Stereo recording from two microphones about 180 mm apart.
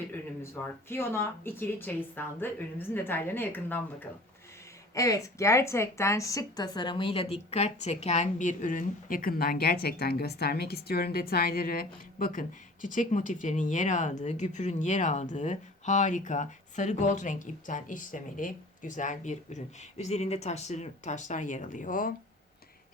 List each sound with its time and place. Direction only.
0.6 s a woman's voice: 15° left (ahead or behind); by 22.1 s 45° left (ahead or behind)